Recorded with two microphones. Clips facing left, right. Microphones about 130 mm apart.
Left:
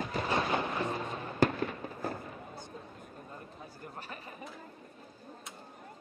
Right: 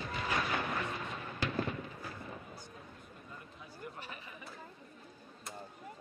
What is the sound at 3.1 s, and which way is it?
Chatter, 40° left (ahead or behind).